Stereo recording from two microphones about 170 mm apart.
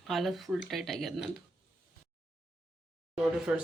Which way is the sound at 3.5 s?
10° right (ahead or behind).